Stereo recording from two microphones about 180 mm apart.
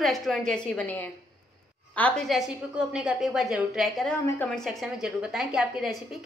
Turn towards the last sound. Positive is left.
turn(degrees=0)  # may be behind; listen again after turning